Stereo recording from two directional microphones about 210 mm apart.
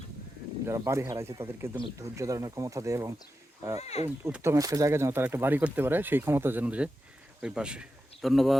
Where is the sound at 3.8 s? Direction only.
30° left (ahead or behind).